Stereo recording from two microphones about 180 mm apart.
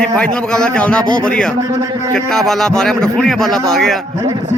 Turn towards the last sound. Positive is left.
turn(degrees=0)  # may be behind; listen again after turning